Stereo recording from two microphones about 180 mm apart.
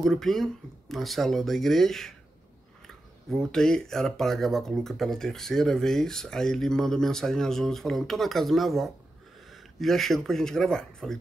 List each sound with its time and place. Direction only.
0.0 s speech: centre (ahead or behind)
3.3 s speech: 5° left (ahead or behind)